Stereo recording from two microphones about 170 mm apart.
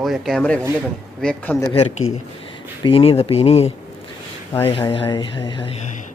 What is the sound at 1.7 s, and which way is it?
Speech, 40° left (ahead or behind).